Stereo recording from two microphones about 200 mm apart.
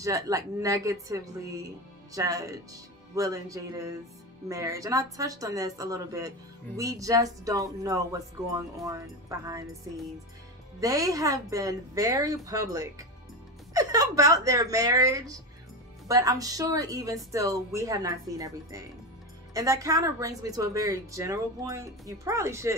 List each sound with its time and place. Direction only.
0.0 s a woman's voice: 15° right (ahead or behind)
10.8 s a woman's voice: 15° right (ahead or behind)